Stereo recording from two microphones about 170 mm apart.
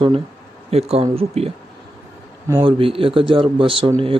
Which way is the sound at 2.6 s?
30° right (ahead or behind).